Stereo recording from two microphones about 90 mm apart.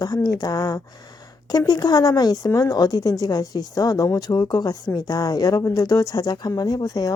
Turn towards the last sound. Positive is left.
turn(degrees=45)  # may be behind; listen again after turning